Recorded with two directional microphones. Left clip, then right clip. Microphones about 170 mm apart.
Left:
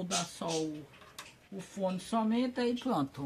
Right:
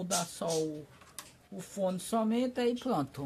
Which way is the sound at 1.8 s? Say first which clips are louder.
Right 1 dB; 25° right (ahead or behind).